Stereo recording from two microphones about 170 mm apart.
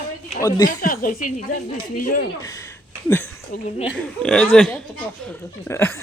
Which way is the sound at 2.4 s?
20° left (ahead or behind).